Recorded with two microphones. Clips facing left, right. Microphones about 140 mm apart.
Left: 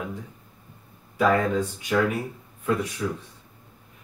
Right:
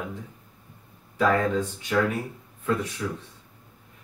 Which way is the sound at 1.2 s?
10° left (ahead or behind).